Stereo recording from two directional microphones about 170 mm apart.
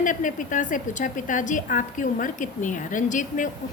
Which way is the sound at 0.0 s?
50° left (ahead or behind).